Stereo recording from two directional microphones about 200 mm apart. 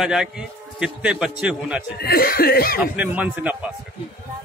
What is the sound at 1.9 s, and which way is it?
Cough, 50° left (ahead or behind).